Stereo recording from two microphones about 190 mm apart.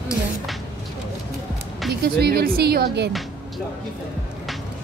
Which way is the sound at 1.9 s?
55° right (ahead or behind).